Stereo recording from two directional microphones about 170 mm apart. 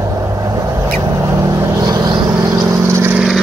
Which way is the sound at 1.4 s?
20° right (ahead or behind).